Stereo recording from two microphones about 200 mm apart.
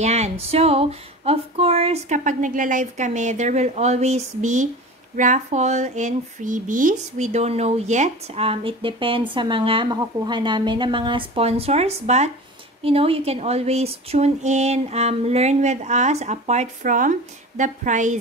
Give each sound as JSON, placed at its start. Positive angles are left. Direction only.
{"t": 0.0, "sound": "a woman's voice", "side_deg": -35}